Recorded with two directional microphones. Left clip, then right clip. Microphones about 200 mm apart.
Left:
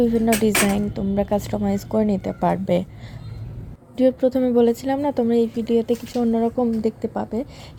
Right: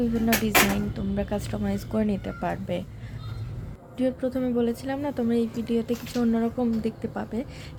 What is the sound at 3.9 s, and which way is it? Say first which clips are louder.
A woman's voice: left 9 dB; 20° left (ahead or behind).